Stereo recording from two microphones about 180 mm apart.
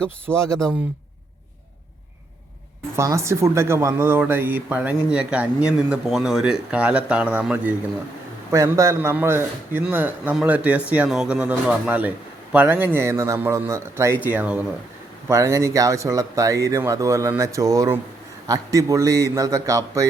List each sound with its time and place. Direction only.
0.3 s a man's voice: 15° right (ahead or behind)
2.9 s a man's voice: 15° right (ahead or behind)